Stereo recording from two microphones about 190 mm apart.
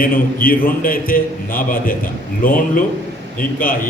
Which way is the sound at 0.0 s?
50° left (ahead or behind).